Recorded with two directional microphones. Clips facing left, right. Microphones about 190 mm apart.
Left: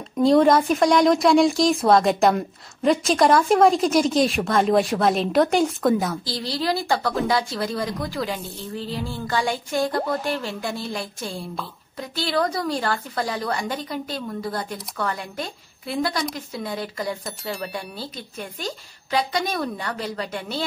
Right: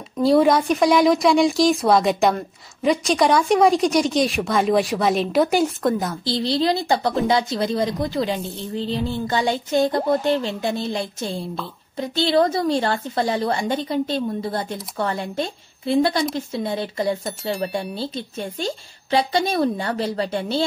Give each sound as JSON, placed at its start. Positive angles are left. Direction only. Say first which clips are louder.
{"t": 0.2, "sound": "a woman's voice", "louder": "even", "side_deg": -5}
{"t": 6.2, "sound": "a woman's voice", "louder": "right 5 dB", "side_deg": -25}